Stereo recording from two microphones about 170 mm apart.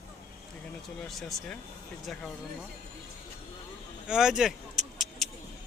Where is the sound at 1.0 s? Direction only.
Centre (ahead or behind).